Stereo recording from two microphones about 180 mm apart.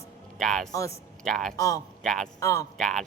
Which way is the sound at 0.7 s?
15° left (ahead or behind).